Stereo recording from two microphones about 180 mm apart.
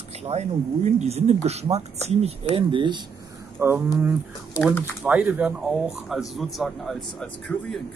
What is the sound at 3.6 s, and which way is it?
Speech, 15° right (ahead or behind).